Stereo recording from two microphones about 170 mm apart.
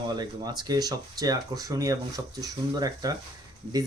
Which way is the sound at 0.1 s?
25° right (ahead or behind).